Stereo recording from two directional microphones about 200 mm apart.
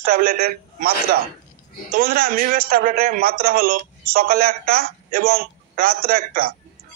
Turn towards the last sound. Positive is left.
turn(degrees=-45)  # may be behind; listen again after turning